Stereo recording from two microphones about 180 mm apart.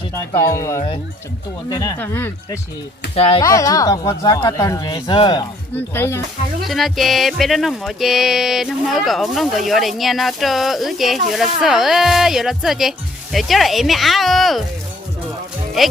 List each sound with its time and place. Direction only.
0.1 s speech: 15° left (ahead or behind)
2.0 s speech: 10° left (ahead or behind)
3.2 s speech: 30° left (ahead or behind)
3.4 s speech: 20° left (ahead or behind)
5.7 s speech: 10° left (ahead or behind)
6.7 s speech: centre (ahead or behind)
15.8 s speech: centre (ahead or behind)